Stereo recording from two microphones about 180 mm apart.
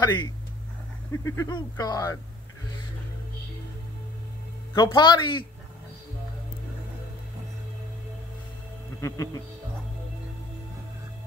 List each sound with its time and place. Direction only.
0.0 s speech: 25° left (ahead or behind)
4.7 s speech: 25° left (ahead or behind)
9.0 s speech: 20° left (ahead or behind)